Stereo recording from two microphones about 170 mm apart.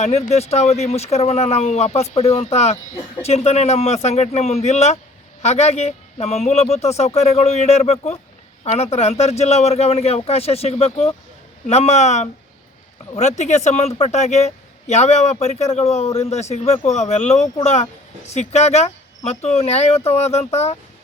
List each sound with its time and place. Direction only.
0.0 s speech: 40° left (ahead or behind)